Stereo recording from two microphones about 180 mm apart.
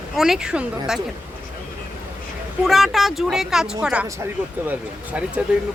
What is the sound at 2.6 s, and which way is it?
A woman's voice, centre (ahead or behind).